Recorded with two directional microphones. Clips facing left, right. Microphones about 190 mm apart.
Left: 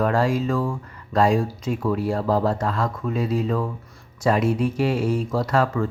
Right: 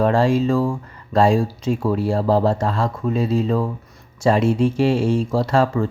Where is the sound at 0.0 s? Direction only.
25° right (ahead or behind).